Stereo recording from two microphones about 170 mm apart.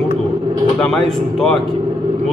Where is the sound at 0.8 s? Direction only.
5° left (ahead or behind).